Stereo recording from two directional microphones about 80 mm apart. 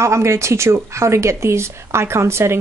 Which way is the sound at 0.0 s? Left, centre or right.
Right.